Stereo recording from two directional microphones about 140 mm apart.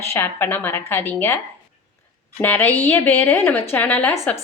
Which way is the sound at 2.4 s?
15° left (ahead or behind).